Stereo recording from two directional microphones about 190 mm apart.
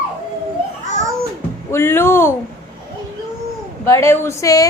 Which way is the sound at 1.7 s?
10° left (ahead or behind).